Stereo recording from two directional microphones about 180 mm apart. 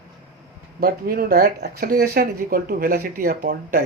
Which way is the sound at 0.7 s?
55° right (ahead or behind).